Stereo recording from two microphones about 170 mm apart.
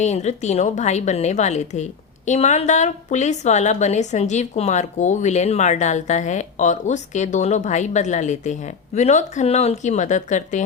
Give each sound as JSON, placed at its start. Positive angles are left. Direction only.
{"t": 0.0, "sound": "a woman's voice", "side_deg": 40}